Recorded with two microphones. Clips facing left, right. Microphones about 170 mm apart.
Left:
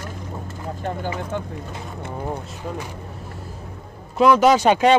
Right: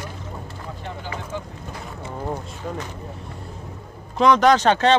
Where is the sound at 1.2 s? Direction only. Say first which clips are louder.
Left 4 dB; 55° left (ahead or behind).